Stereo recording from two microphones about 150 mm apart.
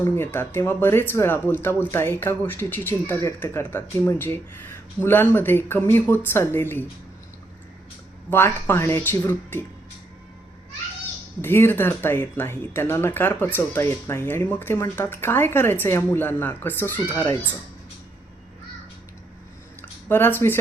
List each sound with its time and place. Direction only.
0.0 s speech: 15° left (ahead or behind)
8.3 s speech: 15° left (ahead or behind)
11.4 s speech: 15° left (ahead or behind)
19.8 s a sound: 15° left (ahead or behind)